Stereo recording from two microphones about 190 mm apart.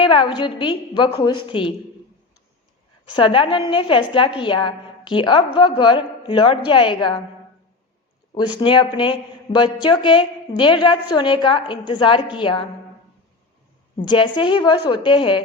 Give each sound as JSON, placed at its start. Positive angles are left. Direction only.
{"t": 0.0, "sound": "a woman's voice", "side_deg": 25}
{"t": 3.1, "sound": "a woman's voice", "side_deg": 25}
{"t": 8.4, "sound": "a woman's voice", "side_deg": 25}
{"t": 14.0, "sound": "a woman's voice", "side_deg": 25}